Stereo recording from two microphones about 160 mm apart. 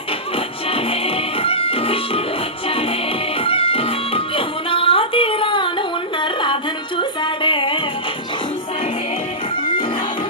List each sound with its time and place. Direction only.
0.3 s music: 35° left (ahead or behind)